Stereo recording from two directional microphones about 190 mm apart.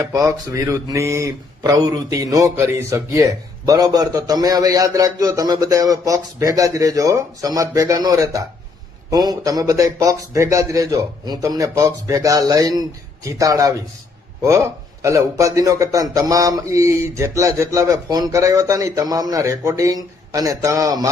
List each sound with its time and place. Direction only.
0.0 s a man's voice: 15° right (ahead or behind)